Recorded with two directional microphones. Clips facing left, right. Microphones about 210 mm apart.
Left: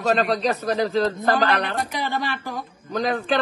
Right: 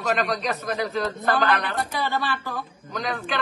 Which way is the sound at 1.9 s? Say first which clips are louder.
Even; 15° left (ahead or behind).